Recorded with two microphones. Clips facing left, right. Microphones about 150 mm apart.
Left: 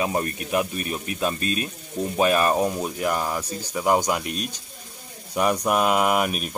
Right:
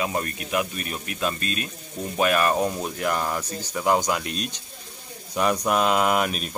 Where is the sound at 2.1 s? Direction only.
15° left (ahead or behind).